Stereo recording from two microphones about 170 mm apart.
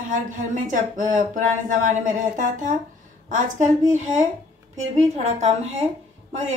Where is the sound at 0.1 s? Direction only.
50° right (ahead or behind).